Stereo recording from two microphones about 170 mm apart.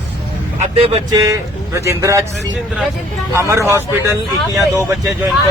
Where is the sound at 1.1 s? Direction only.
20° right (ahead or behind).